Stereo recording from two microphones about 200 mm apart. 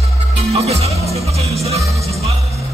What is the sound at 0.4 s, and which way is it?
Music, 30° right (ahead or behind).